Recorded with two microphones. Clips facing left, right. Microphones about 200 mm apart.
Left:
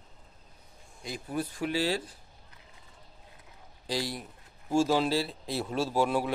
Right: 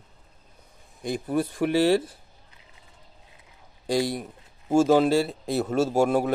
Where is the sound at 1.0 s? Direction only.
55° right (ahead or behind).